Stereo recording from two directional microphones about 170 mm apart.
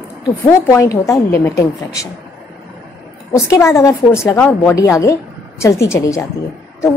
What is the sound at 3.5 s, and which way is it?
A woman's voice, 15° left (ahead or behind).